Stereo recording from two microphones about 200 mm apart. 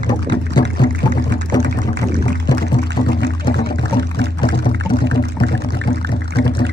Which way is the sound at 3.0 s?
45° left (ahead or behind).